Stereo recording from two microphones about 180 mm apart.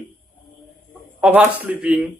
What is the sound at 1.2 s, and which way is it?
Speech, 5° right (ahead or behind).